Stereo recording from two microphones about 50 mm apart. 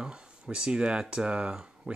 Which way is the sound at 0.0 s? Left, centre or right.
Centre.